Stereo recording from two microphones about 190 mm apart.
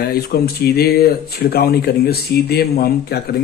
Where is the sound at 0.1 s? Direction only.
55° left (ahead or behind).